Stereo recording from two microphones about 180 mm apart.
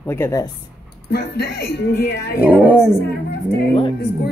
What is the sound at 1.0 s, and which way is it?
Speech, 65° left (ahead or behind).